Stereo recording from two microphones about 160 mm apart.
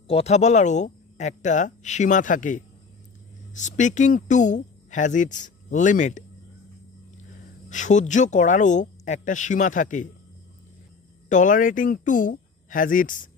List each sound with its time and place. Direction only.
0.1 s speech: 40° left (ahead or behind)
7.2 s speech: 50° left (ahead or behind)
11.2 s speech: 55° left (ahead or behind)